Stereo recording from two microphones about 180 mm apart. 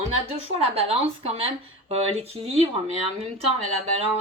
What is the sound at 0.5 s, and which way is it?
Speech, 35° right (ahead or behind).